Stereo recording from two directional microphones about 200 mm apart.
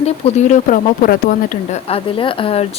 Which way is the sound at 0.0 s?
35° left (ahead or behind).